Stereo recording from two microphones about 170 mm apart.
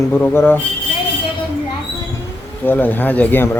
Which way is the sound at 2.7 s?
10° left (ahead or behind).